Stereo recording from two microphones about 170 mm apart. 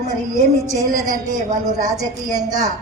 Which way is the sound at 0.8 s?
20° right (ahead or behind).